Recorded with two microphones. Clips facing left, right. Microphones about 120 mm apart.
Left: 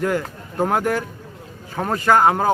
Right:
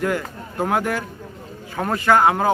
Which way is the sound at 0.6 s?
30° left (ahead or behind).